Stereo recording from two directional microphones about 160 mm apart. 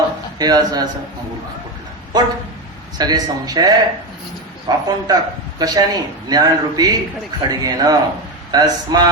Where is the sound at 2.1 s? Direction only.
25° right (ahead or behind).